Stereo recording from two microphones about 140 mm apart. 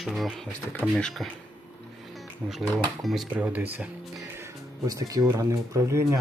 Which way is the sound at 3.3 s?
10° right (ahead or behind).